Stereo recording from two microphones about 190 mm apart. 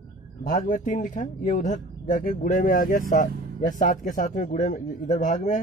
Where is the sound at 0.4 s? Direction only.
45° left (ahead or behind).